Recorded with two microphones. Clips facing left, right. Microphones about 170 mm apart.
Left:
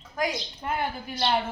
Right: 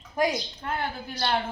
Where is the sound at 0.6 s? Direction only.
15° left (ahead or behind).